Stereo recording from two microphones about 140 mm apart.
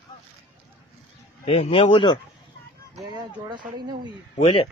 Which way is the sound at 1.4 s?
40° left (ahead or behind).